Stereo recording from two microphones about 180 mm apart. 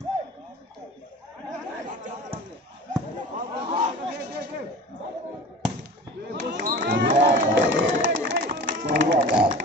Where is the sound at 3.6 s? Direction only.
30° right (ahead or behind).